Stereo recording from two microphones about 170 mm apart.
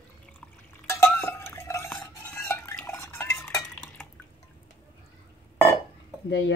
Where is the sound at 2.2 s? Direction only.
10° left (ahead or behind).